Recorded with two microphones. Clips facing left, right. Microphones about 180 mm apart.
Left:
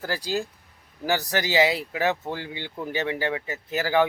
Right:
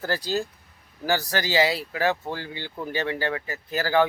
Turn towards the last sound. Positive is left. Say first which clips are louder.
# even
turn(degrees=20)  # may be behind; listen again after turning